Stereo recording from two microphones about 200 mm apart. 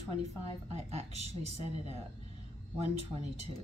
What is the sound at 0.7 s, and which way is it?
A woman's voice, 30° right (ahead or behind).